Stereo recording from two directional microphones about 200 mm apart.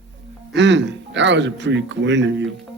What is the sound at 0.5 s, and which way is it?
Speech, 65° right (ahead or behind).